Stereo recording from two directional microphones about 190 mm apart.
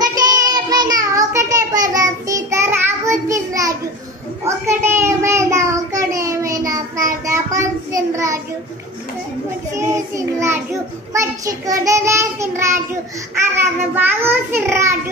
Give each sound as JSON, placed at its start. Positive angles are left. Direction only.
{"t": 0.0, "sound": "child singing", "side_deg": -20}
{"t": 9.8, "sound": "child singing", "side_deg": -15}